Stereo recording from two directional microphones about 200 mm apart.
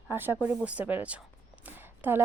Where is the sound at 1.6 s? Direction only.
10° right (ahead or behind).